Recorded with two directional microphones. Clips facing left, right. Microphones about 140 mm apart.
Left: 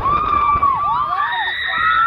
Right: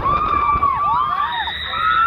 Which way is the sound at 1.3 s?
Centre (ahead or behind).